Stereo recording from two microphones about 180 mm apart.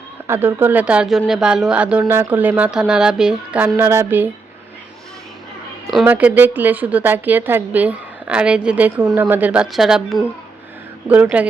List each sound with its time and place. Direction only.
0.3 s a woman's voice: 10° right (ahead or behind)
6.1 s a woman's voice: 10° right (ahead or behind)